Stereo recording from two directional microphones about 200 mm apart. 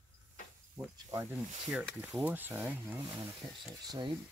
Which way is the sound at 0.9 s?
15° right (ahead or behind).